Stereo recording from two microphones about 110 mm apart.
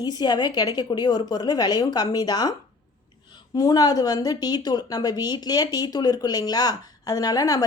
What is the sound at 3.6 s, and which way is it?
A woman's voice, 35° left (ahead or behind).